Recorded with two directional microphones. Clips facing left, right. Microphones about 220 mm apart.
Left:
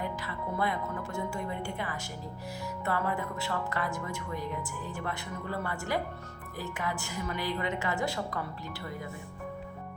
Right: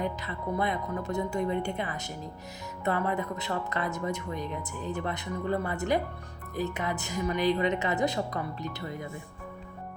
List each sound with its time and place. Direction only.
0.0 s speech: 20° right (ahead or behind)